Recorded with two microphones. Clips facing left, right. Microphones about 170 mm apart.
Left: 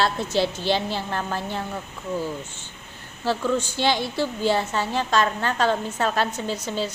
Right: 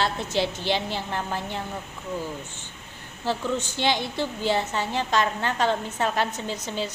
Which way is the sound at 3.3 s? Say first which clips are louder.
Left 3 dB; 20° right (ahead or behind).